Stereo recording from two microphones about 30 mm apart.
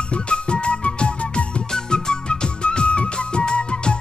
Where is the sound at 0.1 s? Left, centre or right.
Left.